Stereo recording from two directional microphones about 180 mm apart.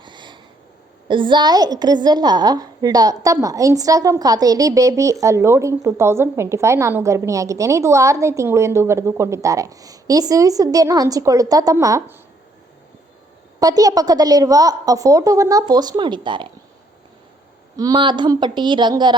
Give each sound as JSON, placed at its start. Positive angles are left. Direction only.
{"t": 0.0, "sound": "a sound", "side_deg": -25}
{"t": 1.0, "sound": "a woman's voice", "side_deg": -25}
{"t": 13.6, "sound": "a woman's voice", "side_deg": -20}
{"t": 17.7, "sound": "a woman's voice", "side_deg": -20}